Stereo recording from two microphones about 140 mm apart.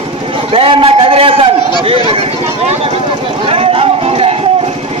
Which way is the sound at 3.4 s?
40° right (ahead or behind).